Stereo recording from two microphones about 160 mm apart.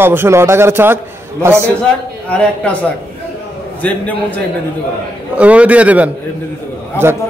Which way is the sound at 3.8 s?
10° left (ahead or behind).